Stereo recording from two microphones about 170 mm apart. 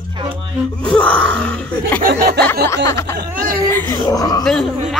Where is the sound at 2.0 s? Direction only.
65° right (ahead or behind).